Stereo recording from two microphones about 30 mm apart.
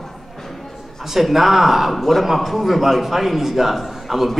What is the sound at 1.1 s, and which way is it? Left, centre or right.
A man's voice, centre.